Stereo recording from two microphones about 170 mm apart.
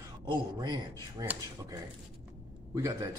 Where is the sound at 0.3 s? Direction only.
25° right (ahead or behind).